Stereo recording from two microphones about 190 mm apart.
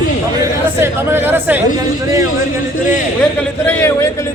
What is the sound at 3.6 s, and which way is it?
Speech, 15° left (ahead or behind).